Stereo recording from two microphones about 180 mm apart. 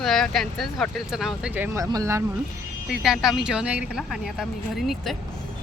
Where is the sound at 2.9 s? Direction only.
Centre (ahead or behind).